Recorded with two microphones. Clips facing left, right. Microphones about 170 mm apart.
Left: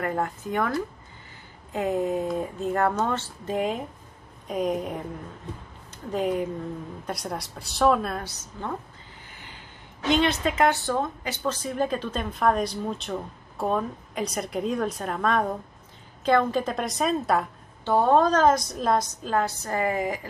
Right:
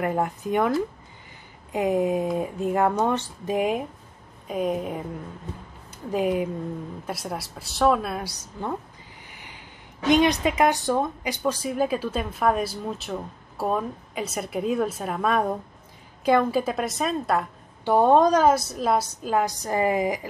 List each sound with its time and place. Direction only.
0.0 s a woman's voice: 15° right (ahead or behind)
1.7 s a woman's voice: 15° right (ahead or behind)
10.0 s a woman's voice: 15° right (ahead or behind); by 17.5 s centre (ahead or behind)
17.8 s a woman's voice: 15° right (ahead or behind)